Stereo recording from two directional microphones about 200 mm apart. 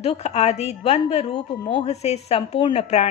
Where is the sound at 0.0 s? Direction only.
30° left (ahead or behind).